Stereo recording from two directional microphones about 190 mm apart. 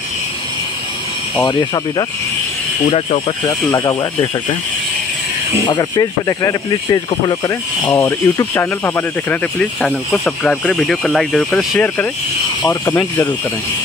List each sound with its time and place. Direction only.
1.4 s speech: 20° left (ahead or behind)
5.5 s speech: 25° left (ahead or behind)